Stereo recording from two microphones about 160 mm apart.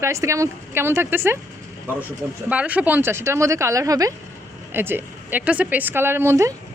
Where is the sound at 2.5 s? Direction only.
10° right (ahead or behind).